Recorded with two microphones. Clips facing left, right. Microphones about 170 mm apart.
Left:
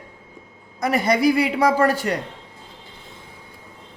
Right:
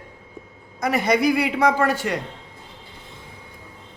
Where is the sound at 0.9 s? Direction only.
35° left (ahead or behind).